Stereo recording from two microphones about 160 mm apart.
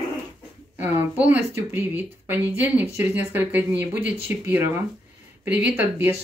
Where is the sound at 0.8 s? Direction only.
10° right (ahead or behind).